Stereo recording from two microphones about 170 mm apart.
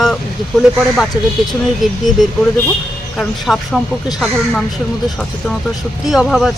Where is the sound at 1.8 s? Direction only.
Centre (ahead or behind).